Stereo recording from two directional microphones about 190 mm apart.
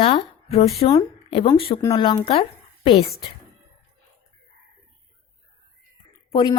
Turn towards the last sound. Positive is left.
turn(degrees=30)  # may be behind; listen again after turning